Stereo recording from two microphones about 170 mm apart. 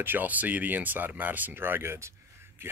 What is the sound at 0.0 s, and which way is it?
Speech, 10° right (ahead or behind).